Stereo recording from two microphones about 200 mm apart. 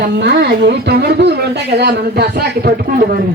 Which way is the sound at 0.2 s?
55° right (ahead or behind).